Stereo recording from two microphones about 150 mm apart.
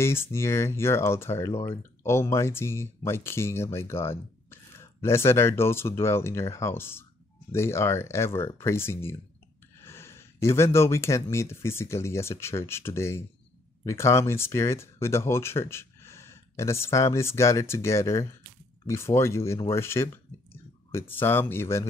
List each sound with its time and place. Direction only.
0.0 s speech: 15° left (ahead or behind)